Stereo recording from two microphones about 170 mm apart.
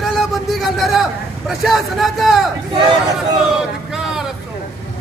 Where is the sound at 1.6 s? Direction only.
Centre (ahead or behind).